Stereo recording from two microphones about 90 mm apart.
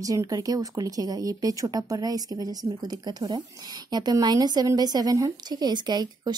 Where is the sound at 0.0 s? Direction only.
40° right (ahead or behind).